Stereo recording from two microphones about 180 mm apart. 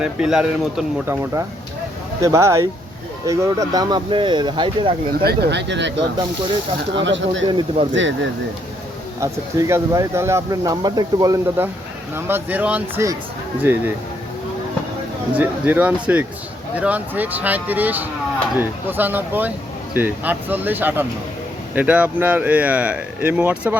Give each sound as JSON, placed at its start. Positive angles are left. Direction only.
{"t": 0.0, "sound": "speech", "side_deg": -5}
{"t": 5.2, "sound": "speech", "side_deg": -60}
{"t": 6.9, "sound": "speech", "side_deg": -90}
{"t": 9.2, "sound": "speech", "side_deg": -15}
{"t": 15.4, "sound": "speech", "side_deg": -10}